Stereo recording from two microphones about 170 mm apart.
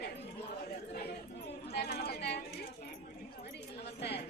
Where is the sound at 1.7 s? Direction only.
70° left (ahead or behind).